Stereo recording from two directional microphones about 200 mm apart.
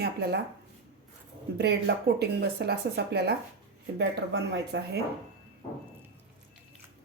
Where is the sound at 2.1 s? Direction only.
55° right (ahead or behind).